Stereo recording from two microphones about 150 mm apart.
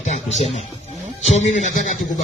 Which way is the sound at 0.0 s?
50° left (ahead or behind).